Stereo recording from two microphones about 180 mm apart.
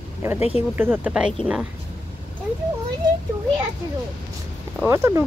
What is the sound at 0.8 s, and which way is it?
Speech, 10° right (ahead or behind).